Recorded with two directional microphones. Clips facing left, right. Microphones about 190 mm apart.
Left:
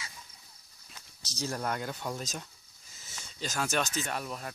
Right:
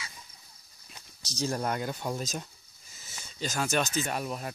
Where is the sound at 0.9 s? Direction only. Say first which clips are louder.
Right 5 dB; 15° right (ahead or behind).